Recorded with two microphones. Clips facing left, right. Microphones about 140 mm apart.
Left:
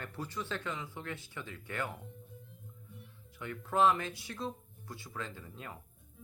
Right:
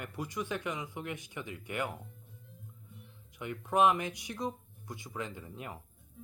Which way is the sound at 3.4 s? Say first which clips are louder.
Right 2 dB; 15° right (ahead or behind).